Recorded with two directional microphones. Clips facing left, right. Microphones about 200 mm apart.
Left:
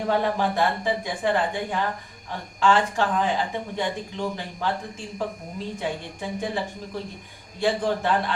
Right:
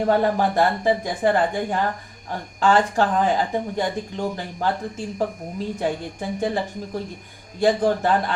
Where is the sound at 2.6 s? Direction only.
40° right (ahead or behind).